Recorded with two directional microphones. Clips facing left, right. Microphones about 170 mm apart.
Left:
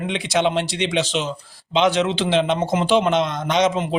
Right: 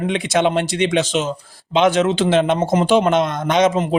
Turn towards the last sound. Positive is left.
turn(degrees=-45)  # may be behind; listen again after turning